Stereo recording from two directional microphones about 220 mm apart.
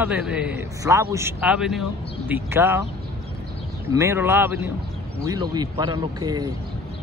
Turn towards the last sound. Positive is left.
turn(degrees=-15)  # may be behind; listen again after turning